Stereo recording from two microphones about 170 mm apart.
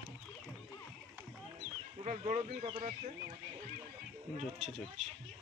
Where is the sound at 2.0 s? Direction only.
45° right (ahead or behind).